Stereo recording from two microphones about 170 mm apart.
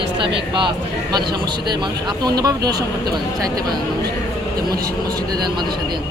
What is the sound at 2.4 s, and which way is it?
Speech, 20° right (ahead or behind).